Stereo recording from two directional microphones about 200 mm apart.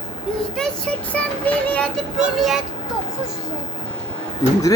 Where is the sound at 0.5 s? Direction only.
5° left (ahead or behind).